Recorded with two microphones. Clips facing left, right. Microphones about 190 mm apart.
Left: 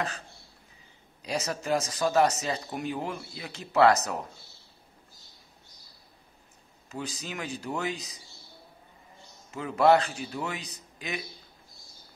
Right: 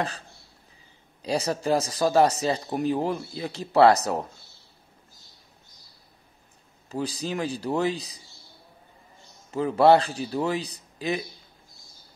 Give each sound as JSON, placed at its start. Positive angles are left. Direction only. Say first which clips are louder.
{"t": 1.2, "sound": "speech", "louder": "right 6 dB", "side_deg": -30}
{"t": 6.9, "sound": "speech", "louder": "right 7 dB", "side_deg": -35}
{"t": 9.5, "sound": "speech", "louder": "right 4 dB", "side_deg": -35}